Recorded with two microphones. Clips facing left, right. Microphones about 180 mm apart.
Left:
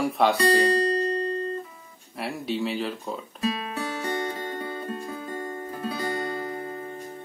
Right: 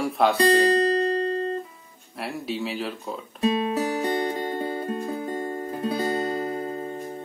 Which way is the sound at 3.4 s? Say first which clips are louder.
Right 7 dB; 30° right (ahead or behind).